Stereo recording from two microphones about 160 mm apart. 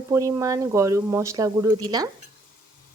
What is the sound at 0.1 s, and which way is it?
Speech, 20° right (ahead or behind).